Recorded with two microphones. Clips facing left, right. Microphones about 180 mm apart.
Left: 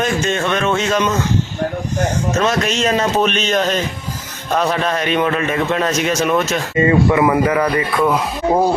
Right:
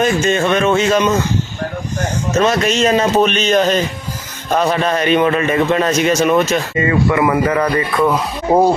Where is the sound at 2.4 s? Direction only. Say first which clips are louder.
Right 5 dB; centre (ahead or behind).